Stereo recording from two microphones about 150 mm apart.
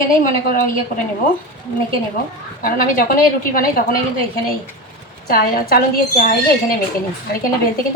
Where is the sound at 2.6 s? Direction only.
70° left (ahead or behind).